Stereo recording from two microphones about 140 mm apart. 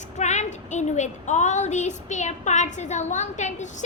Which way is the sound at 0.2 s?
55° left (ahead or behind).